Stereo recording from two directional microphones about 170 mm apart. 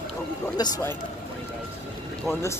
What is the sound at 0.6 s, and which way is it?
Speech, 25° left (ahead or behind).